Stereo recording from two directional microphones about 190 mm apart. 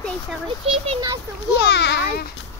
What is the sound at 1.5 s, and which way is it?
Children playing, 65° left (ahead or behind).